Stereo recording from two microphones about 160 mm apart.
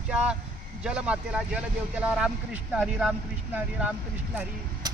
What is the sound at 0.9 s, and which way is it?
Speech, 5° right (ahead or behind).